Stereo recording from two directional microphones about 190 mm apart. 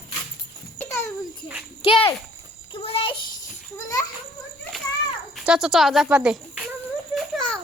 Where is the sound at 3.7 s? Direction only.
15° left (ahead or behind).